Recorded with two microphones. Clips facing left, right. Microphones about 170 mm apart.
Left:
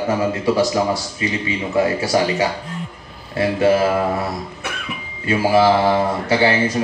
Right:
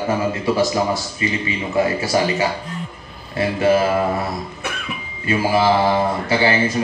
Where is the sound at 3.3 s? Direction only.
75° left (ahead or behind).